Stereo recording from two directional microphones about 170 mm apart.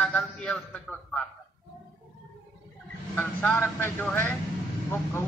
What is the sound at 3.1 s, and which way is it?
A man's voice, 10° left (ahead or behind).